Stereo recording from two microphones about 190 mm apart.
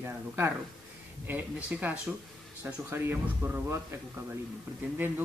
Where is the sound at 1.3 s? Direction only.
10° right (ahead or behind).